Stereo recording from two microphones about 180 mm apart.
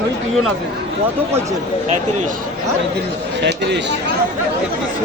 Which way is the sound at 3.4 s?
70° right (ahead or behind).